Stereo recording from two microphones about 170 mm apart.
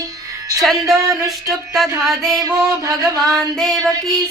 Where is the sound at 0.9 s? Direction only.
20° right (ahead or behind).